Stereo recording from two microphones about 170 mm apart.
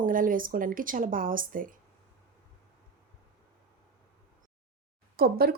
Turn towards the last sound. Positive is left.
turn(degrees=-60)  # may be behind; listen again after turning